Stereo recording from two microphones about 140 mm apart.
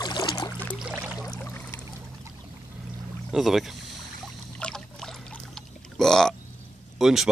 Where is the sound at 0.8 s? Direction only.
10° right (ahead or behind).